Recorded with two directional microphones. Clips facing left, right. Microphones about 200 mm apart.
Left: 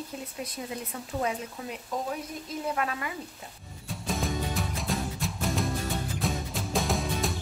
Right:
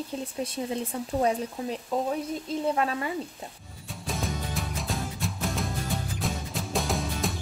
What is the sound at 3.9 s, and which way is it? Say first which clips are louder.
Music: left 1 dB; centre (ahead or behind).